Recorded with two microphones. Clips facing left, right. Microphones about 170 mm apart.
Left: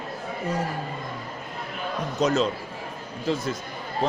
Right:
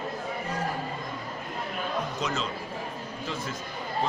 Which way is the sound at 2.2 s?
40° left (ahead or behind).